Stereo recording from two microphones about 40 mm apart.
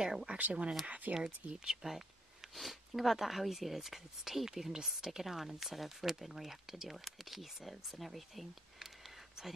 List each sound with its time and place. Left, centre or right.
0.0 s speech: centre
0.4 s speech: right
1.6 s speech: centre
2.5 s speech: centre